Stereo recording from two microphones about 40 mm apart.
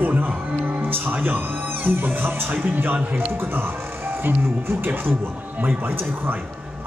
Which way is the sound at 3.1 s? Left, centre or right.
Right.